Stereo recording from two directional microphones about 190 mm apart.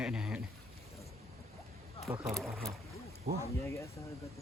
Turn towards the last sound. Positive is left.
turn(degrees=15)  # may be behind; listen again after turning